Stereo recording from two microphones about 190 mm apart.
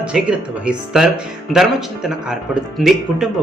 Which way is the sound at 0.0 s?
5° right (ahead or behind).